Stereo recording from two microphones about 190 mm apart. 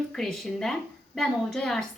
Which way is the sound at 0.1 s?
5° left (ahead or behind).